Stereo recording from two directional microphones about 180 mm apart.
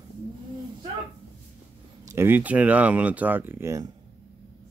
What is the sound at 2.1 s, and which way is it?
Speech, 15° right (ahead or behind).